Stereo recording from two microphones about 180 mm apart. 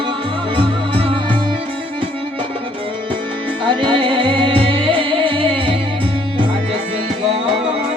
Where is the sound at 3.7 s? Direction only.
30° right (ahead or behind).